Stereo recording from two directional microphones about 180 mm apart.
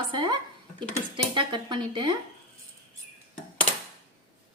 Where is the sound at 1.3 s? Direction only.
25° right (ahead or behind).